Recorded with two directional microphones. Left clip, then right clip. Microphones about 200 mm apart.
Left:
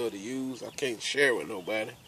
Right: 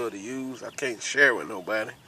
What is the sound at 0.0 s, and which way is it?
Speech, 20° left (ahead or behind).